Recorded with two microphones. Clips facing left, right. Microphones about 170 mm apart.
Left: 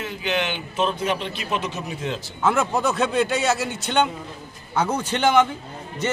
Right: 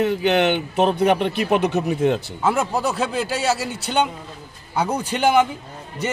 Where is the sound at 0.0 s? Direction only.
60° right (ahead or behind).